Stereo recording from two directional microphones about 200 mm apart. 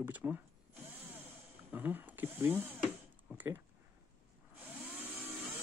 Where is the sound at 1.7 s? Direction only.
10° right (ahead or behind).